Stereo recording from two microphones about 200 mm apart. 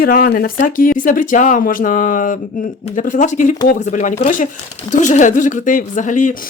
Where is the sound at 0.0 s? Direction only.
45° left (ahead or behind).